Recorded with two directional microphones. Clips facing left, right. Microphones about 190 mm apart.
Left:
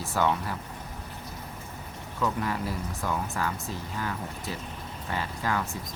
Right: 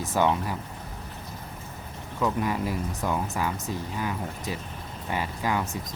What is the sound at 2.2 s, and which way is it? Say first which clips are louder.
Speech: right 3 dB; 15° right (ahead or behind).